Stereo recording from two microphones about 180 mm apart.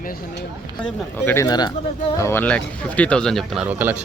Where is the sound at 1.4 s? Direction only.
20° left (ahead or behind).